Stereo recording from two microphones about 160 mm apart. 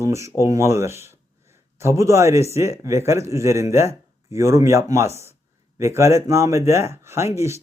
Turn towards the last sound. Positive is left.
turn(degrees=-15)  # may be behind; listen again after turning